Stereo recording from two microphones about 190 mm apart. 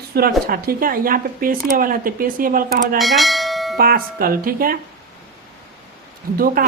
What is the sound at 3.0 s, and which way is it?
Bell, centre (ahead or behind).